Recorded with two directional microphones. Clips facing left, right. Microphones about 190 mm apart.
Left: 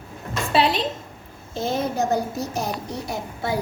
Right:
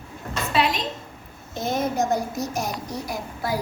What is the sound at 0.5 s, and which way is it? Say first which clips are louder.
A woman's voice: left 3 dB; 30° left (ahead or behind).